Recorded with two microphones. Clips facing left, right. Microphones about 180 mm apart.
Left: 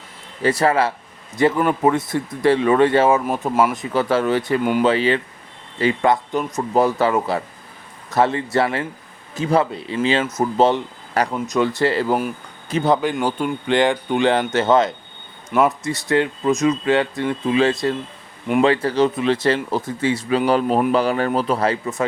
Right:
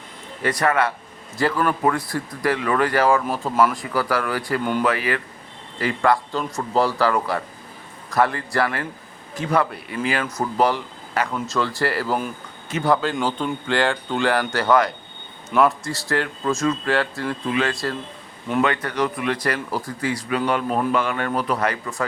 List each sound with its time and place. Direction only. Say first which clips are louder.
0.4 s speech: left 3 dB; 30° left (ahead or behind)
11.1 s speech: left 4 dB; 40° left (ahead or behind)
11.3 s speech: left 4 dB; 20° left (ahead or behind)